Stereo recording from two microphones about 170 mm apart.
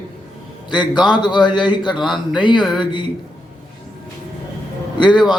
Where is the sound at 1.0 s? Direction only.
25° left (ahead or behind).